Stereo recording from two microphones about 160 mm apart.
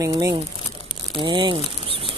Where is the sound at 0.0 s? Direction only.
20° right (ahead or behind).